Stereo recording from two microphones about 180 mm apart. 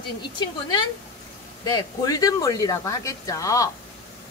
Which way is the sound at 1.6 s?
20° left (ahead or behind).